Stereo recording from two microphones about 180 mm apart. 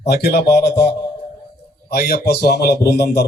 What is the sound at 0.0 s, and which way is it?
A man's voice, 65° left (ahead or behind).